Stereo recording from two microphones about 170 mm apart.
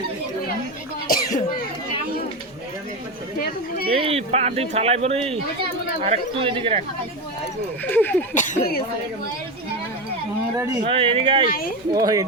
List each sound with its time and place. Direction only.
1.0 s cough: 55° left (ahead or behind)
3.8 s speech: 35° right (ahead or behind)
7.9 s speech: 10° left (ahead or behind)
8.4 s speech: 45° left (ahead or behind)
10.8 s speech: 30° right (ahead or behind)
11.9 s speech: 20° right (ahead or behind)